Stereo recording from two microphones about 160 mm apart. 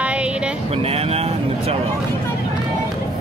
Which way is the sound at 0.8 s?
40° right (ahead or behind).